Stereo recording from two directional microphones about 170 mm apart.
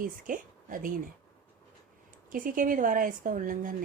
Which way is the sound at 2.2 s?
55° right (ahead or behind).